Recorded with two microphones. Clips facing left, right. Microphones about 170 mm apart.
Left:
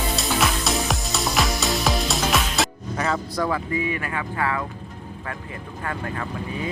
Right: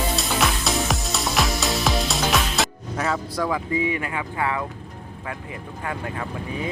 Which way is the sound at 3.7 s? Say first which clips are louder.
Right 1 dB; 20° right (ahead or behind).